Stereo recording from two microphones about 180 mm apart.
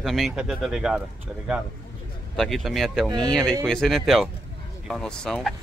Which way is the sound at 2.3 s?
Centre (ahead or behind).